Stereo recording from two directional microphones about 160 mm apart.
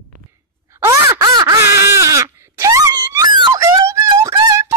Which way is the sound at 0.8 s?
20° right (ahead or behind).